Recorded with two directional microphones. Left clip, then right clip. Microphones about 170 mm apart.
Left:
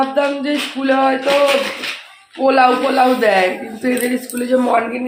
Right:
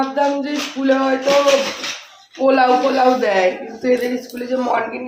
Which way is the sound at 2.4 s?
50° left (ahead or behind).